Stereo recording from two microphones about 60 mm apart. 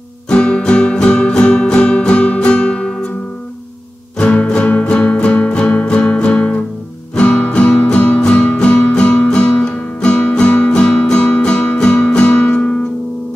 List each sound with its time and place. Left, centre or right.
0.3 s music: centre
4.2 s music: centre